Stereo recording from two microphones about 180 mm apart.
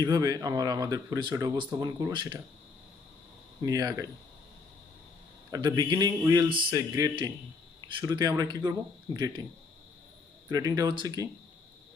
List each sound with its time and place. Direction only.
0.0 s speech: 20° right (ahead or behind)
3.6 s speech: 20° right (ahead or behind)
5.5 s speech: 20° right (ahead or behind)
10.5 s speech: 20° right (ahead or behind)